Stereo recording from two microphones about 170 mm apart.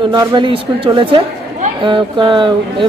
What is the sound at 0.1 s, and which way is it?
A woman's voice, 25° right (ahead or behind).